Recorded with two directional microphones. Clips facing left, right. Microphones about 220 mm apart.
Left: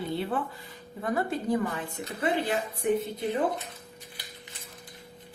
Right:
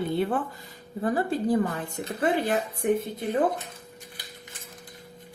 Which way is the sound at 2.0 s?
50° right (ahead or behind).